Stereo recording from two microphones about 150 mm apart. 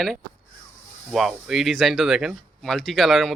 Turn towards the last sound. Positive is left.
turn(degrees=0)  # may be behind; listen again after turning